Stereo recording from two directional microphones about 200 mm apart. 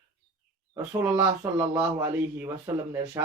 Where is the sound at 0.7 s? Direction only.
20° right (ahead or behind).